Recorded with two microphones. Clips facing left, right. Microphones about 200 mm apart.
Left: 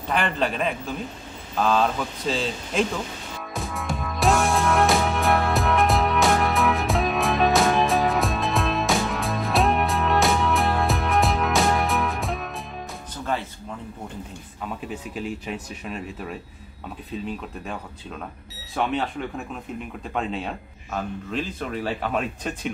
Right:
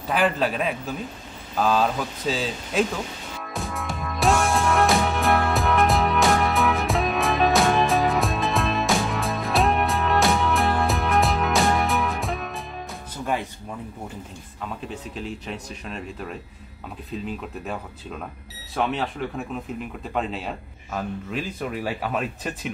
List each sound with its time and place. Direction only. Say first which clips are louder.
0.1 s a man's voice: right 2 dB; 5° right (ahead or behind)
3.3 s music: even; centre (ahead or behind)
13.2 s music: right 1 dB; 15° right (ahead or behind)
15.1 s speech: left 4 dB; 5° left (ahead or behind)
18.9 s a man's voice: left 1 dB; centre (ahead or behind)